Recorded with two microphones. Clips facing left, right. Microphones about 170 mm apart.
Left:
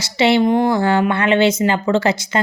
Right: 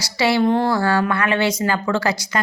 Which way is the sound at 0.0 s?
25° left (ahead or behind).